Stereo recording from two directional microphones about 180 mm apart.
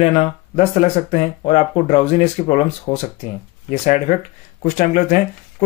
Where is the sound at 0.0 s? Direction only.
35° left (ahead or behind).